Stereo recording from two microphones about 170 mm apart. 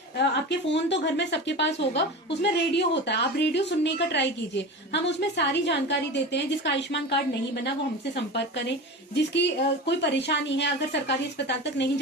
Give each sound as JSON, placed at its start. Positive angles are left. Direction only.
{"t": 0.2, "sound": "a woman's voice", "side_deg": 90}